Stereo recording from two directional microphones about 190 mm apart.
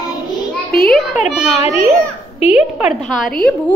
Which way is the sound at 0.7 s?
50° left (ahead or behind).